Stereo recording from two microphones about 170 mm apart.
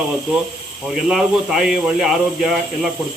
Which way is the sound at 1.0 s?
5° right (ahead or behind).